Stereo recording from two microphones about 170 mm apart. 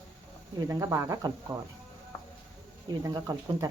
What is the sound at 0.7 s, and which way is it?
Speech, 15° right (ahead or behind).